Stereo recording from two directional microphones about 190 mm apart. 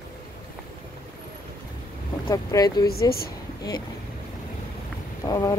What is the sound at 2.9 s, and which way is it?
Speech, 55° left (ahead or behind).